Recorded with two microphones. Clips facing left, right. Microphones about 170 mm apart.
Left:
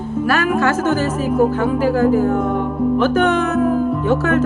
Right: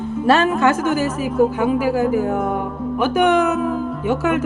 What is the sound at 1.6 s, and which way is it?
Speech, 10° right (ahead or behind).